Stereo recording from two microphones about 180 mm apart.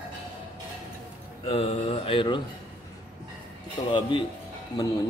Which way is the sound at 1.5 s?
35° left (ahead or behind).